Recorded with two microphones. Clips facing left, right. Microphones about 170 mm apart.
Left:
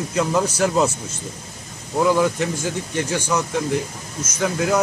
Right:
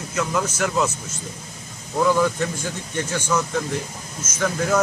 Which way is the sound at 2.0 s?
10° left (ahead or behind).